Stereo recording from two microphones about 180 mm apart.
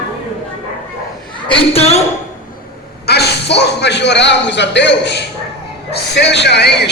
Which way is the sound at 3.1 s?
65° left (ahead or behind).